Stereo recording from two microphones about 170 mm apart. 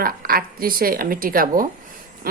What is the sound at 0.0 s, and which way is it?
A woman's voice, 60° right (ahead or behind).